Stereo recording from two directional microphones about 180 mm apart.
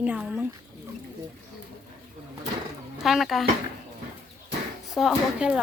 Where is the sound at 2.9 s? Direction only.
Centre (ahead or behind).